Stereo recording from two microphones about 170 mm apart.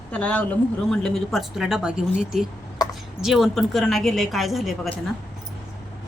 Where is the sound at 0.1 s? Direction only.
5° left (ahead or behind).